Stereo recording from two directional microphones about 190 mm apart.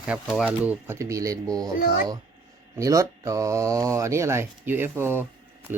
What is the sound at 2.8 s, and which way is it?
Speech, 15° right (ahead or behind).